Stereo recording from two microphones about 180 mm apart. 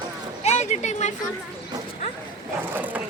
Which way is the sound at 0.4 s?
40° left (ahead or behind).